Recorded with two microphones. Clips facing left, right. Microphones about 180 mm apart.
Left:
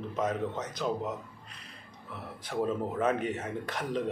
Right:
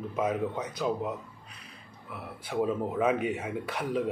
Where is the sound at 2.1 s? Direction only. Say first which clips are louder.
Right 2 dB; 5° right (ahead or behind).